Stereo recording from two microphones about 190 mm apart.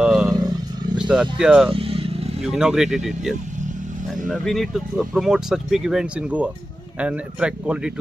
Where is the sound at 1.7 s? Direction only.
30° right (ahead or behind).